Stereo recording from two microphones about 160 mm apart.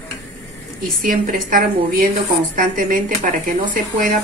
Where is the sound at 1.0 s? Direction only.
60° right (ahead or behind).